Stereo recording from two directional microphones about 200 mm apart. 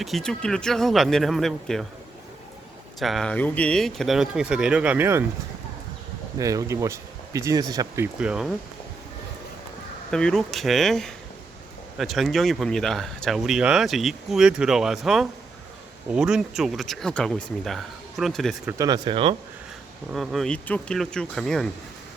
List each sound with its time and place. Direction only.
0.0 s speech: centre (ahead or behind)
3.0 s speech: centre (ahead or behind)
6.4 s speech: 15° right (ahead or behind)
10.1 s speech: 5° left (ahead or behind)
18.8 s speech: 20° right (ahead or behind)
20.1 s speech: centre (ahead or behind)